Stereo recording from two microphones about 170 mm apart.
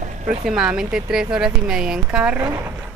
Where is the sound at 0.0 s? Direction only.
45° right (ahead or behind).